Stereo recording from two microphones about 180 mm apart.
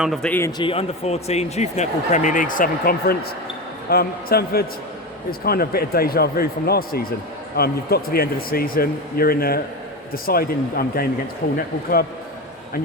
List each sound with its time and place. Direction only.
0.0 s a man's voice: centre (ahead or behind)
0.6 s speech: 30° left (ahead or behind); by 11.1 s 55° left (ahead or behind)